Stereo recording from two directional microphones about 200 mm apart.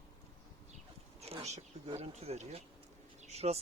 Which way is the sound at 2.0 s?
35° right (ahead or behind).